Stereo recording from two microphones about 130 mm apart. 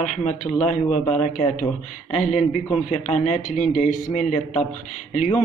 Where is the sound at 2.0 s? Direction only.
55° left (ahead or behind).